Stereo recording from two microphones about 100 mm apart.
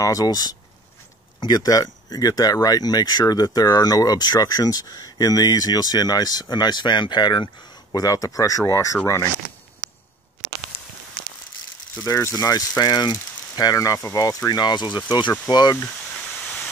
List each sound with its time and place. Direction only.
0.0 s speech: 35° left (ahead or behind)
12.0 s speech: 30° left (ahead or behind)
16.2 s steam: 5° left (ahead or behind)